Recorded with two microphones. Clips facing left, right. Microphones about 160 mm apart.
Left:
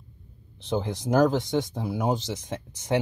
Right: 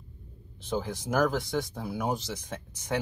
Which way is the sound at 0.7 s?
20° left (ahead or behind).